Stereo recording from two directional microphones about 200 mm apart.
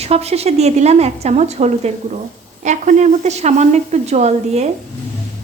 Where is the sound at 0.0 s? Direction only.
30° right (ahead or behind).